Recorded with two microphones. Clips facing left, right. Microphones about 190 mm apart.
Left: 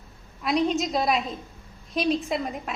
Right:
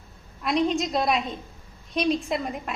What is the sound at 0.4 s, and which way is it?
A woman's voice, centre (ahead or behind).